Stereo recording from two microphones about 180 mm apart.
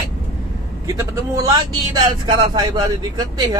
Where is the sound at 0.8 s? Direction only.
20° right (ahead or behind).